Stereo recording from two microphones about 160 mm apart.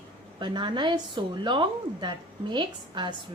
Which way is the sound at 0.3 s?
30° right (ahead or behind).